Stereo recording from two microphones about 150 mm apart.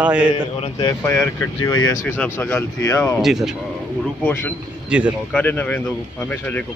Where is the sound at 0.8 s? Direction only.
15° left (ahead or behind).